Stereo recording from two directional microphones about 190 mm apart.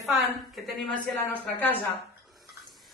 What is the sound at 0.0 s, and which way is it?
A woman's voice, centre (ahead or behind).